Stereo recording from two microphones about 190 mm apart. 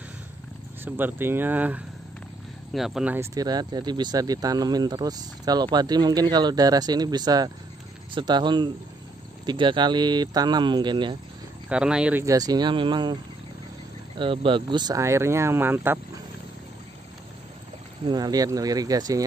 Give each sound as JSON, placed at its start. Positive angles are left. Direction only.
{"t": 0.8, "sound": "speech", "side_deg": -10}
{"t": 3.3, "sound": "speech", "side_deg": -20}
{"t": 11.7, "sound": "speech", "side_deg": -5}
{"t": 18.0, "sound": "speech", "side_deg": -20}